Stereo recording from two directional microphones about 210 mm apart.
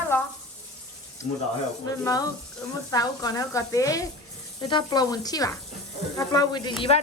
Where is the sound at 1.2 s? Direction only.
15° left (ahead or behind).